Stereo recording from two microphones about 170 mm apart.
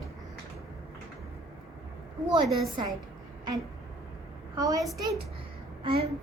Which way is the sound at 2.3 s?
25° right (ahead or behind).